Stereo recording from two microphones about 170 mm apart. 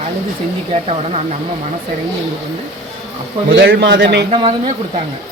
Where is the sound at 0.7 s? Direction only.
40° right (ahead or behind).